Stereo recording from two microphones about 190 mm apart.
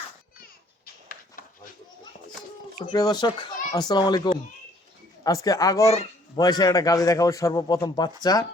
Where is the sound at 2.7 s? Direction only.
20° left (ahead or behind).